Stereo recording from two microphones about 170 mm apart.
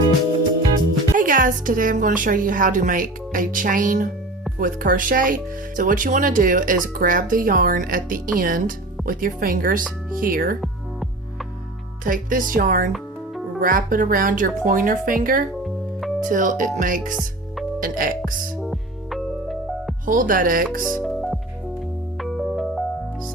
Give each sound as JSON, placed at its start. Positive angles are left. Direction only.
{"t": 1.1, "sound": "speech", "side_deg": -50}
{"t": 12.0, "sound": "speech", "side_deg": -55}
{"t": 15.6, "sound": "music", "side_deg": 0}
{"t": 16.3, "sound": "speech", "side_deg": -50}
{"t": 18.6, "sound": "music", "side_deg": 0}
{"t": 20.1, "sound": "speech", "side_deg": -55}
{"t": 20.8, "sound": "music", "side_deg": 0}